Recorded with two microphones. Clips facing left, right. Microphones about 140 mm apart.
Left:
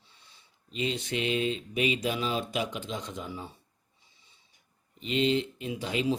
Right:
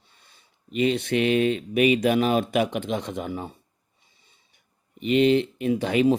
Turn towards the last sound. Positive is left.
turn(degrees=-60)  # may be behind; listen again after turning